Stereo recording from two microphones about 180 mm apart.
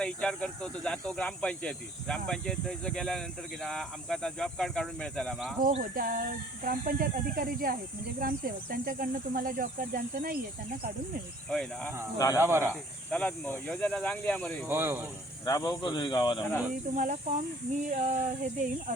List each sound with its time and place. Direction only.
0.0 s speech: 5° left (ahead or behind)
5.9 s speech: 50° right (ahead or behind)
11.5 s speech: 5° left (ahead or behind)
12.1 s speech: 20° left (ahead or behind)
12.4 s speech: 15° right (ahead or behind)
13.1 s speech: 5° left (ahead or behind)
14.7 s speech: 15° right (ahead or behind)
15.4 s speech: 25° left (ahead or behind)
16.9 s speech: 45° right (ahead or behind)